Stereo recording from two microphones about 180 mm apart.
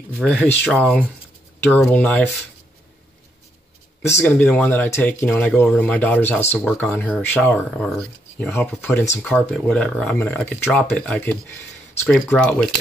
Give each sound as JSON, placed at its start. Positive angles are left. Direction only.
{"t": 0.2, "sound": "speech", "side_deg": 5}
{"t": 4.0, "sound": "speech", "side_deg": 15}